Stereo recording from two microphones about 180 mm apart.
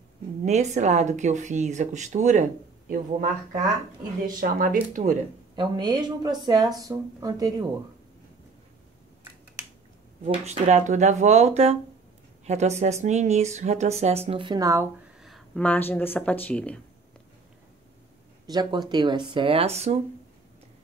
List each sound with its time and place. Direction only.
0.5 s speech: 40° right (ahead or behind)
4.4 s speech: 50° right (ahead or behind)
5.6 s speech: 25° right (ahead or behind)
10.2 s speech: 35° right (ahead or behind); by 14.9 s 20° right (ahead or behind)
15.2 s speech: centre (ahead or behind)
18.5 s speech: 25° right (ahead or behind)